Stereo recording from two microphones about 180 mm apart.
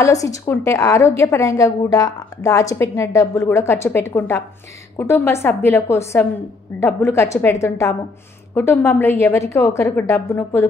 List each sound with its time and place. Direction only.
0.0 s a woman's voice: 20° left (ahead or behind)